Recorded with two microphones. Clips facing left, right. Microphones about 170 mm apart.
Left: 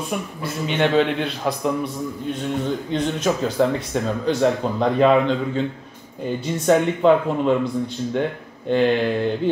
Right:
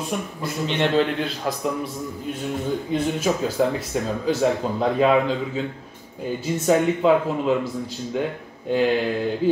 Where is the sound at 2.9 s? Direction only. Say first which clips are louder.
Even; 5° right (ahead or behind).